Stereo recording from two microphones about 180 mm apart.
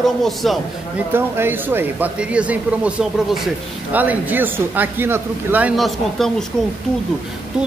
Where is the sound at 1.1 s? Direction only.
10° right (ahead or behind).